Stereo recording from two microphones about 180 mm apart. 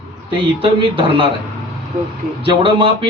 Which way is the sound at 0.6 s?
30° right (ahead or behind).